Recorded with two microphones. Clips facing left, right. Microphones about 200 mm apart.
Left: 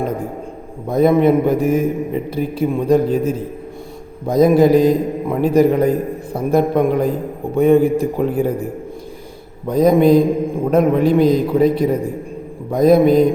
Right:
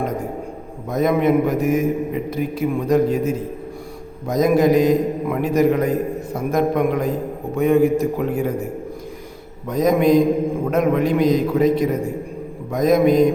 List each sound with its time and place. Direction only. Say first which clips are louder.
0.9 s a man's voice: left 5 dB; 30° left (ahead or behind)
9.6 s a man's voice: left 4 dB; 30° left (ahead or behind)